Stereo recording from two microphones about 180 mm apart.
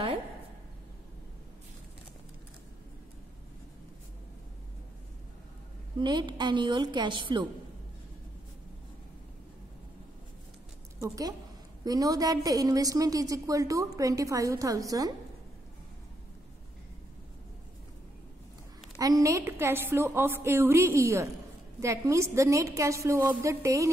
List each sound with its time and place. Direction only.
5.9 s a woman's voice: 25° right (ahead or behind)
11.0 s a woman's voice: 20° right (ahead or behind)
18.9 s a woman's voice: 20° right (ahead or behind)